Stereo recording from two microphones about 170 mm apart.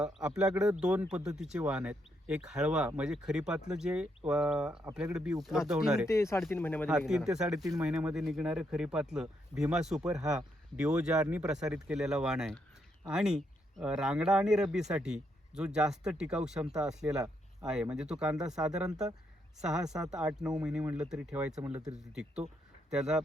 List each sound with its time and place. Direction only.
0.0 s a man's voice: 5° right (ahead or behind)
6.1 s speech: 15° left (ahead or behind)
7.1 s a man's voice: 5° right (ahead or behind)